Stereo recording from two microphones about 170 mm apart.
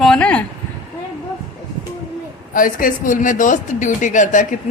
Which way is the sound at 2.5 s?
55° left (ahead or behind).